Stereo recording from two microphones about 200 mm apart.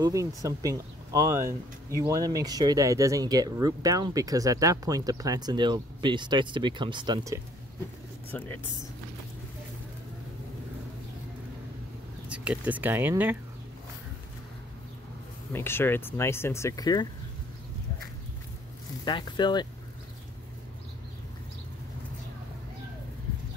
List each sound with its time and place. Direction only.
0.0 s speech: 15° right (ahead or behind)
8.3 s speech: 10° left (ahead or behind)
12.3 s speech: 5° right (ahead or behind)
15.5 s speech: 10° left (ahead or behind)
19.0 s speech: 20° left (ahead or behind)